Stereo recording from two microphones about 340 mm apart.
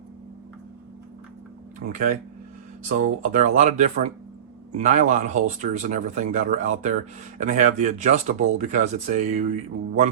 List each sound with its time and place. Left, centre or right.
1.9 s speech: right